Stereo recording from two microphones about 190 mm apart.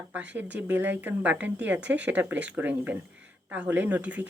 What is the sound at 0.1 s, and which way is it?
Speech, 5° right (ahead or behind).